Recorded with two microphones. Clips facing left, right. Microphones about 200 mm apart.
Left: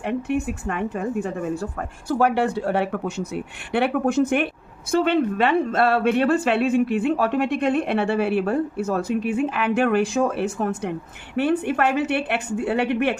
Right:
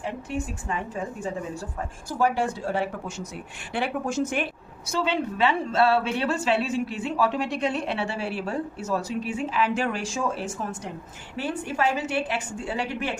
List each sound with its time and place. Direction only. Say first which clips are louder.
0.0 s a woman's voice: left 7 dB; 65° left (ahead or behind)